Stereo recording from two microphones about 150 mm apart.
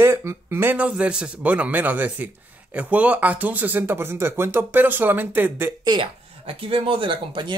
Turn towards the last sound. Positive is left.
turn(degrees=-35)  # may be behind; listen again after turning